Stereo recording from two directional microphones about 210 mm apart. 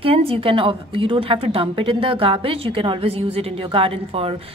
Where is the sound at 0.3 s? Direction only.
25° right (ahead or behind).